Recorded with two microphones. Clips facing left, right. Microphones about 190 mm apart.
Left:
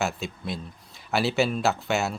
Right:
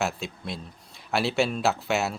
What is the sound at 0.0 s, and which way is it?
Speech, centre (ahead or behind).